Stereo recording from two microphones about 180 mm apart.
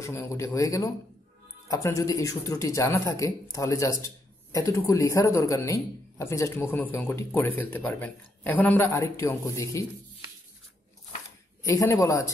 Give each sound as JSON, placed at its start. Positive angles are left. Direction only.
{"t": 0.0, "sound": "speech", "side_deg": 15}
{"t": 11.6, "sound": "speech", "side_deg": 15}